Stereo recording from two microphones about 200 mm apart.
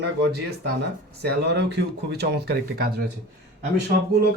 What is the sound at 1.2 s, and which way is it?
Speech, 55° right (ahead or behind).